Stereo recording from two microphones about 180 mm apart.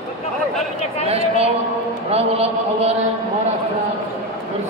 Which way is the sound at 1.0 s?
35° right (ahead or behind).